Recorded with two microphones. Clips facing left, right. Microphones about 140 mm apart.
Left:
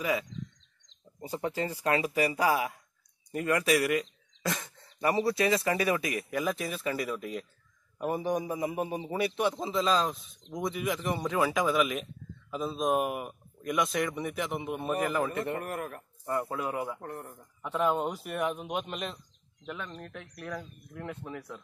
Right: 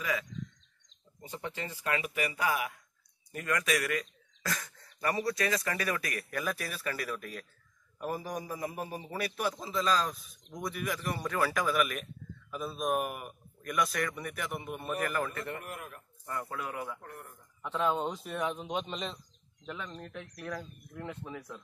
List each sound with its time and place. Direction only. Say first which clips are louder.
0.0 s a man's voice: left 4 dB; 30° left (ahead or behind); by 15.3 s 10° left (ahead or behind)
15.3 s a man's voice: left 6 dB; 30° left (ahead or behind)
15.6 s speech: left 8 dB; 45° left (ahead or behind)
16.3 s a man's voice: left 6 dB; 30° left (ahead or behind)
17.6 s speech: left 2 dB; 10° left (ahead or behind)